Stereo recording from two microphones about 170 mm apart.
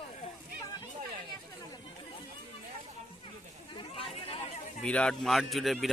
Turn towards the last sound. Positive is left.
turn(degrees=0)  # may be behind; listen again after turning